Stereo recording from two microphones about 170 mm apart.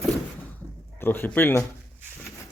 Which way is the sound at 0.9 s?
10° left (ahead or behind).